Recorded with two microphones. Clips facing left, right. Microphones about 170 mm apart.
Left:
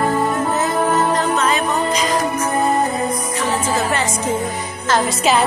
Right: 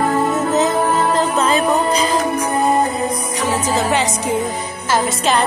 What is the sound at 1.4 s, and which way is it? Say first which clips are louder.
Music: right 3 dB; 35° right (ahead or behind).